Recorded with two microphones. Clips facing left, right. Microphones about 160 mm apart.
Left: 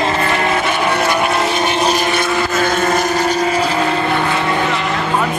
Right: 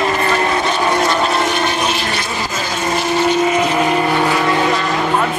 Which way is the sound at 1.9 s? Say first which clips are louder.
Left 5 dB; 50° left (ahead or behind).